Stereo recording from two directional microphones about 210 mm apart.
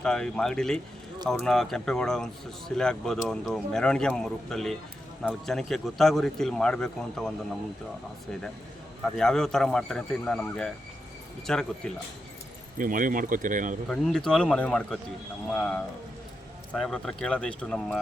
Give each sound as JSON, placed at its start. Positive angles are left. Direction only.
{"t": 0.0, "sound": "speech", "side_deg": 5}
{"t": 9.0, "sound": "speech", "side_deg": 5}
{"t": 12.8, "sound": "speech", "side_deg": -40}
{"t": 13.9, "sound": "speech", "side_deg": 0}